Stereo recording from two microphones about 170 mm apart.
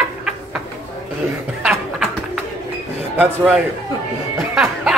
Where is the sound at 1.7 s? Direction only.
5° right (ahead or behind).